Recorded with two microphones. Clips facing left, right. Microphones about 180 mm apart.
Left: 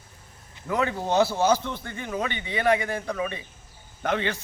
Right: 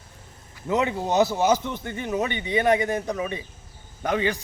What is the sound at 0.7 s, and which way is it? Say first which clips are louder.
A man's voice: right 2 dB; 20° right (ahead or behind).